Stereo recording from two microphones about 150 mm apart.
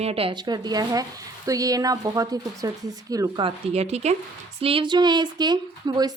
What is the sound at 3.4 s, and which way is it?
Speech, 45° right (ahead or behind).